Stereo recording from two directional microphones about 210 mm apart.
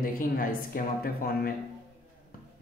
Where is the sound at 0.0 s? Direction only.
40° left (ahead or behind).